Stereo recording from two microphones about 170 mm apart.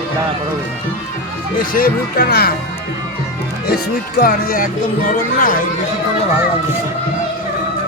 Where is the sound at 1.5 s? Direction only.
55° left (ahead or behind).